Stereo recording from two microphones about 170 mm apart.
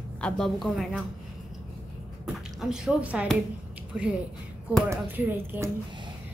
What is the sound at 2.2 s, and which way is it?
Speech, 5° right (ahead or behind).